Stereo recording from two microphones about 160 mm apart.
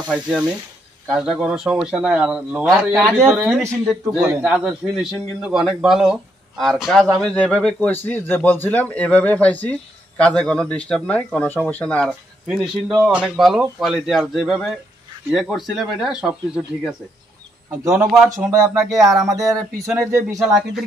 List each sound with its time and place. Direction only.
0.1 s a man's voice: 5° right (ahead or behind)
19.1 s speech: 20° right (ahead or behind)
20.3 s speech: centre (ahead or behind)